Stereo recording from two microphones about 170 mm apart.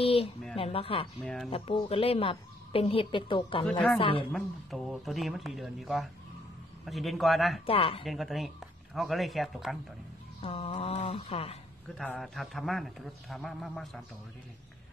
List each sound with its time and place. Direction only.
0.0 s a sound: 35° left (ahead or behind)
0.6 s speech: 35° left (ahead or behind)
1.2 s a man's voice: centre (ahead or behind)
1.5 s a woman's voice: 35° left (ahead or behind)
4.3 s a man's voice: centre (ahead or behind)
7.6 s a woman's voice: 35° left (ahead or behind)
8.0 s a man's voice: centre (ahead or behind)
10.4 s a woman's voice: 35° left (ahead or behind)
12.0 s a man's voice: centre (ahead or behind)